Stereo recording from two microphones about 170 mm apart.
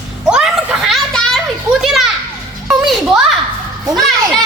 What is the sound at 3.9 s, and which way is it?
Speech, centre (ahead or behind).